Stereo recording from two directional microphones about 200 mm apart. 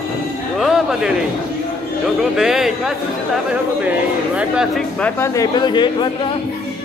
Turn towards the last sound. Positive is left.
turn(degrees=25)  # may be behind; listen again after turning